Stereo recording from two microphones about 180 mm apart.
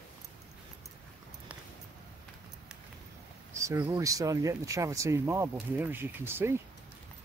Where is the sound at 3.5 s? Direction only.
15° right (ahead or behind).